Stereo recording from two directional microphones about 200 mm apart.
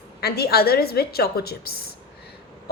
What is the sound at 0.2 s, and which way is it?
A woman's voice, 50° left (ahead or behind).